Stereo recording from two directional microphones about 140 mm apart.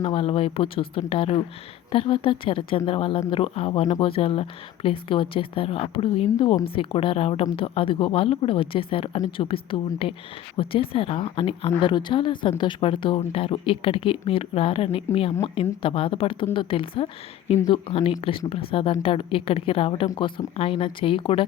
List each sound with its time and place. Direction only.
0.0 s speech: 45° left (ahead or behind)